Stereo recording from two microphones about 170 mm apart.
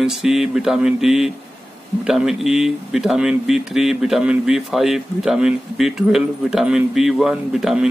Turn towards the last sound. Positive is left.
turn(degrees=-5)  # may be behind; listen again after turning